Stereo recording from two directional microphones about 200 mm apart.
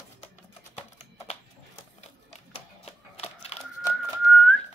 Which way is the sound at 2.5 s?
30° left (ahead or behind).